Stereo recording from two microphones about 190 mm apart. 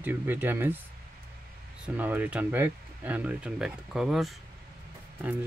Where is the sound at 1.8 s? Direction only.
10° right (ahead or behind).